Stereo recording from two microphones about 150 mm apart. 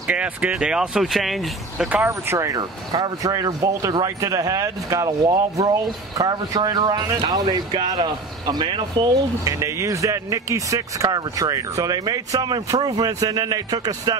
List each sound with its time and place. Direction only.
0.0 s speech: 10° right (ahead or behind)
2.0 s speech: 20° right (ahead or behind)
9.4 s speech: 20° right (ahead or behind)